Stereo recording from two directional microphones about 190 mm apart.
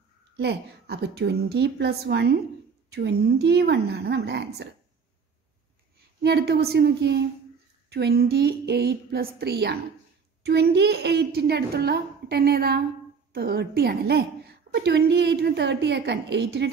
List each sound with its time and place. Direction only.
0.4 s a woman's voice: 60° right (ahead or behind)
6.2 s a woman's voice: 60° right (ahead or behind)